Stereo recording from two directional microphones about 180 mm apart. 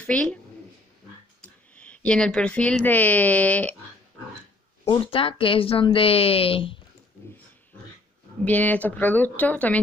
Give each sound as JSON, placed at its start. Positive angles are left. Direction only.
{"t": 0.0, "sound": "speech", "side_deg": 5}
{"t": 1.4, "sound": "speech", "side_deg": 5}
{"t": 4.8, "sound": "a woman's voice", "side_deg": 30}
{"t": 8.5, "sound": "speech", "side_deg": 10}